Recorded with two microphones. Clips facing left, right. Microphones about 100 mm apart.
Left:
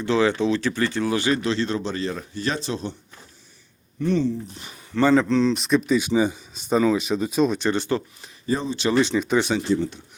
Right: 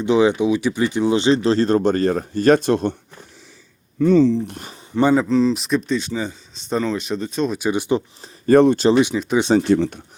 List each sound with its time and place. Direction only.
0.0 s speech: 20° right (ahead or behind); by 2.9 s 55° right (ahead or behind)
4.3 s speech: 65° right (ahead or behind)
4.9 s speech: 15° right (ahead or behind)
5.2 s speech: 5° right (ahead or behind)
7.6 s speech: 15° right (ahead or behind)
8.4 s speech: 60° right (ahead or behind)
8.9 s speech: 15° right (ahead or behind)
9.6 s speech: 70° right (ahead or behind)